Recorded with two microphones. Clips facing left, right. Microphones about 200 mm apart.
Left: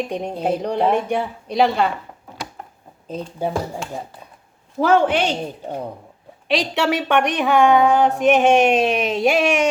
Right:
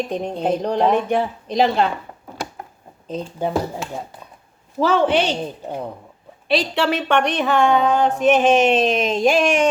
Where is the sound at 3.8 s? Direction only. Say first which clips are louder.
Right 1 dB; centre (ahead or behind).